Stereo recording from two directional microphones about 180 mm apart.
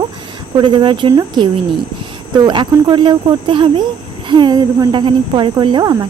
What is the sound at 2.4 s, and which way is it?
A woman's voice, 25° right (ahead or behind).